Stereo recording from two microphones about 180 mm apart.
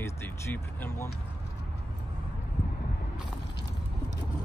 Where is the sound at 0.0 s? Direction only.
10° left (ahead or behind).